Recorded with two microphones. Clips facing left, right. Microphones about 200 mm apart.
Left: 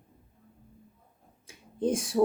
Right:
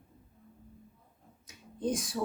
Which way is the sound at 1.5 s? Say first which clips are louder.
Left 4 dB; 25° left (ahead or behind).